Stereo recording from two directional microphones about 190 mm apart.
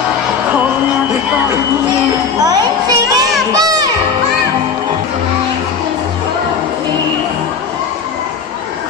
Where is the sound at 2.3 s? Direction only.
20° right (ahead or behind).